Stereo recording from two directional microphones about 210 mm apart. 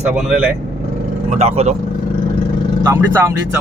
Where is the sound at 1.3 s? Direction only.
30° right (ahead or behind).